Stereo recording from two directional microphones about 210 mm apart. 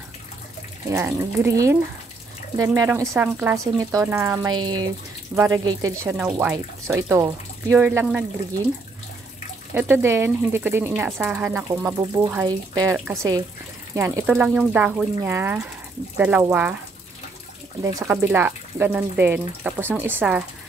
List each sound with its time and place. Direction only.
0.9 s speech: 15° right (ahead or behind)
9.8 s speech: 10° right (ahead or behind)
17.8 s speech: 15° right (ahead or behind)